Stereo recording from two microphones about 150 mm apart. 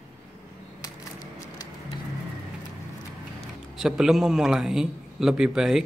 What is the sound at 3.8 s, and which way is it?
Speech, 5° right (ahead or behind).